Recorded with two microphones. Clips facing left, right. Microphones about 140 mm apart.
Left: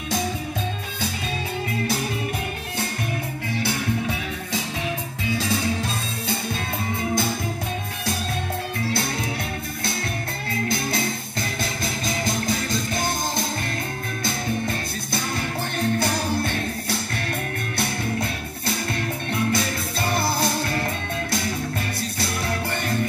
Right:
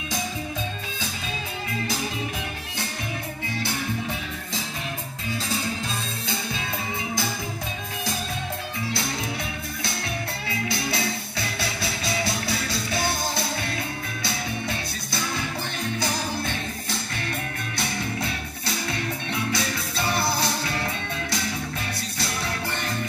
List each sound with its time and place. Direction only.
5.4 s music: 70° left (ahead or behind)
6.2 s music: 55° left (ahead or behind)
10.5 s music: 50° left (ahead or behind)
16.0 s music: 55° left (ahead or behind)